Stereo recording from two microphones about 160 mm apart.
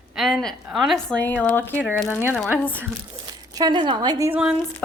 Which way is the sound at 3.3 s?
25° right (ahead or behind).